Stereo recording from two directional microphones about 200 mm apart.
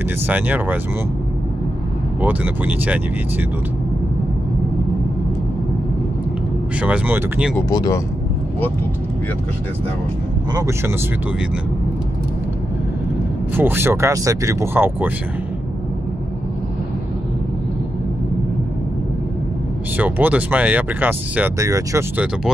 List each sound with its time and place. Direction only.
0.3 s speech: 10° right (ahead or behind)
2.2 s speech: 10° right (ahead or behind)
6.8 s speech: 10° right (ahead or behind)
7.5 s speech: 15° left (ahead or behind)
13.6 s speech: 10° right (ahead or behind)
20.0 s speech: 10° right (ahead or behind)